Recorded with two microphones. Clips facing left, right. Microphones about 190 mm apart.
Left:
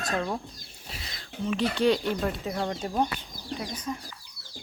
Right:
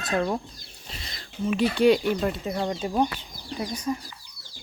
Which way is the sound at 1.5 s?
10° right (ahead or behind).